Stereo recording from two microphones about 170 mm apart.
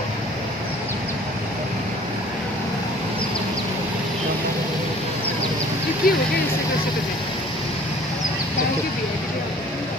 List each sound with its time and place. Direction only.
6.0 s speech: 60° left (ahead or behind)